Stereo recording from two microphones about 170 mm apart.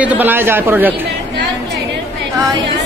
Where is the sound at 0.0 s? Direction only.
10° right (ahead or behind).